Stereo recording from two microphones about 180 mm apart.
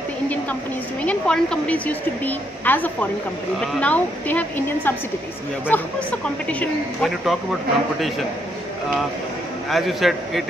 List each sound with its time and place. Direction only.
1.0 s a woman's voice: 5° left (ahead or behind)
9.7 s a man's voice: centre (ahead or behind)